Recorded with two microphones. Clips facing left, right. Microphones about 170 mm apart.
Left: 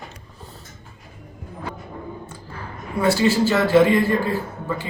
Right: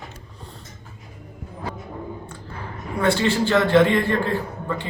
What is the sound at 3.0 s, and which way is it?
A man's voice, 5° left (ahead or behind).